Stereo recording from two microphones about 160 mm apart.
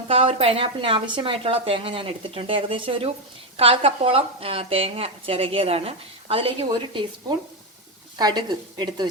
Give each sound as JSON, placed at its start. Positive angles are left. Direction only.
{"t": 0.1, "sound": "speech", "side_deg": -35}
{"t": 8.2, "sound": "a woman's voice", "side_deg": -25}